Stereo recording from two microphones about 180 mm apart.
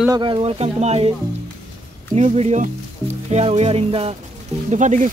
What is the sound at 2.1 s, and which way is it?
Speech, 35° right (ahead or behind).